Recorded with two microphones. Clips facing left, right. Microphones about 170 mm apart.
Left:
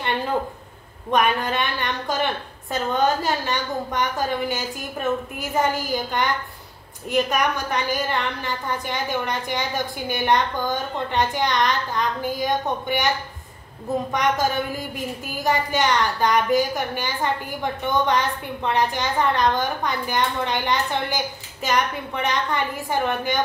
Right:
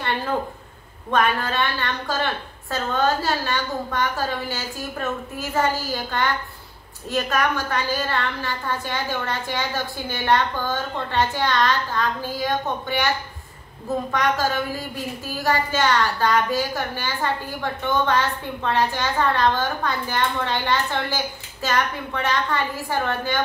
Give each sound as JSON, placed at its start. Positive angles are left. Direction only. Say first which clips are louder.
{"t": 1.1, "sound": "a woman's voice", "louder": "left 1 dB", "side_deg": 20}
{"t": 14.1, "sound": "a woman's voice", "louder": "even", "side_deg": 20}